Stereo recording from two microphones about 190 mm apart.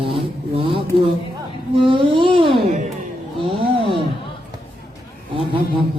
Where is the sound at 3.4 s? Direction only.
30° right (ahead or behind).